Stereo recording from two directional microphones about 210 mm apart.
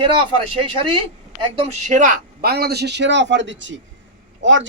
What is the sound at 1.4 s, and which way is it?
Speech, 30° right (ahead or behind).